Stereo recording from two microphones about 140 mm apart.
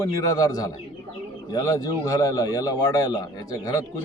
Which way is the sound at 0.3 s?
25° left (ahead or behind).